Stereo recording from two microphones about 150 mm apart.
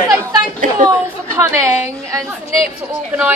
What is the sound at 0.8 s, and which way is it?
Chatter, 20° right (ahead or behind).